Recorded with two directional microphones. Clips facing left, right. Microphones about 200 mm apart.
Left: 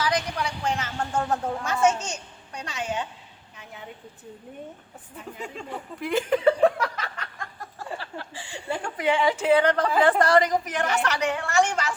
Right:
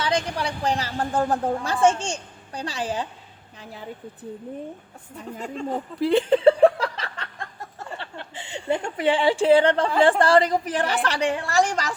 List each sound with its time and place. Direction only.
0.0 s a woman's voice: 30° right (ahead or behind)
5.6 s a sound: 35° right (ahead or behind)
7.9 s a woman's voice: 20° right (ahead or behind)